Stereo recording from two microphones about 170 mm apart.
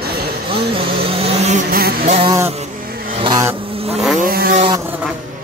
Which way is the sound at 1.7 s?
60° right (ahead or behind).